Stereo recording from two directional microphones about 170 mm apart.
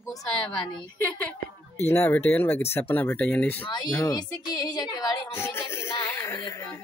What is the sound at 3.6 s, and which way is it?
Speech, 25° left (ahead or behind).